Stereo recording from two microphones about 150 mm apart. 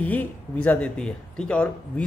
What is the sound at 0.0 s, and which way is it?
Speech, 10° left (ahead or behind).